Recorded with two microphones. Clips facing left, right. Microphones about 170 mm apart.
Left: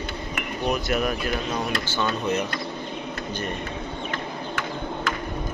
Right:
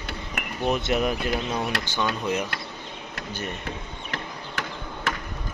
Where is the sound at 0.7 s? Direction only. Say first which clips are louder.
Right 1 dB; 20° right (ahead or behind).